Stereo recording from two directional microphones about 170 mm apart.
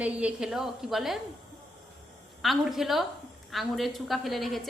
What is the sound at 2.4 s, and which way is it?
A woman's voice, centre (ahead or behind).